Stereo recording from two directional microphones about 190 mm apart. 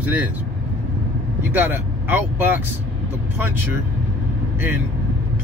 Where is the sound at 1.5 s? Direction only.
10° right (ahead or behind).